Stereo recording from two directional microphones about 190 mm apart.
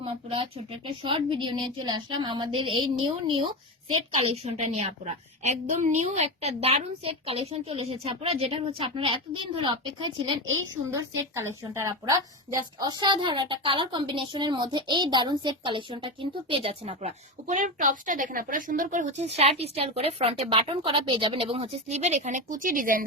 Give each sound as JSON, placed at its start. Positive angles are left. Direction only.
{"t": 0.0, "sound": "a woman's voice", "side_deg": -30}
{"t": 4.2, "sound": "a woman's voice", "side_deg": -35}
{"t": 10.9, "sound": "a woman's voice", "side_deg": -15}